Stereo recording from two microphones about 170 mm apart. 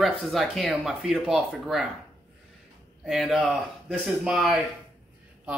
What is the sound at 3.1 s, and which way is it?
Speech, centre (ahead or behind).